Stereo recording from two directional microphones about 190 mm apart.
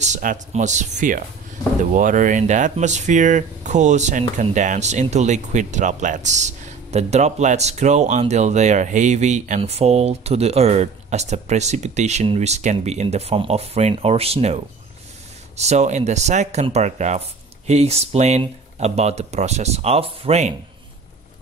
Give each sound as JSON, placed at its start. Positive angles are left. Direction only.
{"t": 0.0, "sound": "speech", "side_deg": -40}